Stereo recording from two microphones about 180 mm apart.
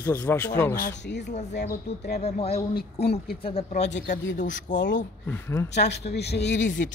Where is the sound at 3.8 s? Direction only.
80° left.